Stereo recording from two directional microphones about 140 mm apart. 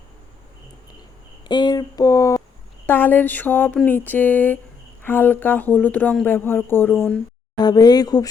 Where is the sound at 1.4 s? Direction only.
30° left (ahead or behind).